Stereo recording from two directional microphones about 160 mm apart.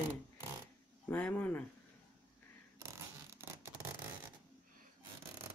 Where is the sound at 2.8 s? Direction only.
15° right (ahead or behind).